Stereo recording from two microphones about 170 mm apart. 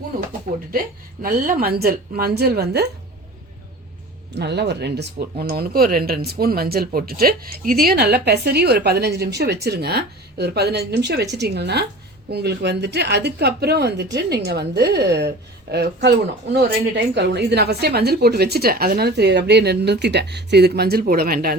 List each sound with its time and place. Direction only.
1.2 s a woman's voice: 55° right (ahead or behind); by 2.9 s 70° right (ahead or behind)
4.4 s speech: 80° right; by 21.5 s 65° right (ahead or behind)